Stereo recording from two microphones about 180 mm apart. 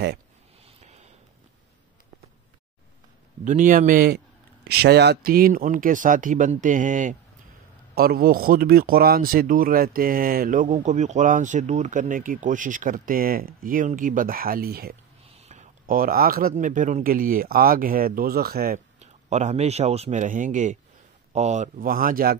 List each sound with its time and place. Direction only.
3.4 s speech: 50° right (ahead or behind)
4.6 s speech: 65° right (ahead or behind); by 7.2 s 45° right (ahead or behind)
7.9 s speech: 60° right (ahead or behind)
15.4 s speech: 40° right (ahead or behind); by 18.8 s 55° right (ahead or behind)
18.9 s speech: 40° right (ahead or behind)